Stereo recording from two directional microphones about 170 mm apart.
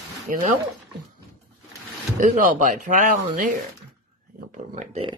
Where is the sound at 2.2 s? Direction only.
50° right (ahead or behind).